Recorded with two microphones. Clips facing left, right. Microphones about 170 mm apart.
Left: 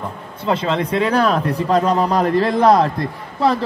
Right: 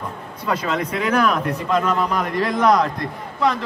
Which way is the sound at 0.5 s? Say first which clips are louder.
Left 4 dB; 30° left (ahead or behind).